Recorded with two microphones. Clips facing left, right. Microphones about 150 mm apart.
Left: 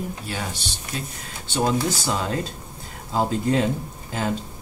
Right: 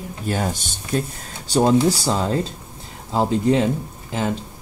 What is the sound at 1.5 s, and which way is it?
Speech, 35° right (ahead or behind).